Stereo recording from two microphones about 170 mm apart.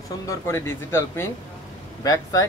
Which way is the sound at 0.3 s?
15° left (ahead or behind).